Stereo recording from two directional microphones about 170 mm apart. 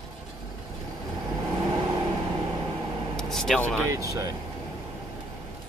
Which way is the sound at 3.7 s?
20° right (ahead or behind).